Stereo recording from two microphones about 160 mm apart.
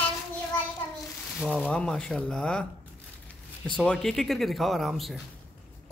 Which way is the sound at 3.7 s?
5° left (ahead or behind).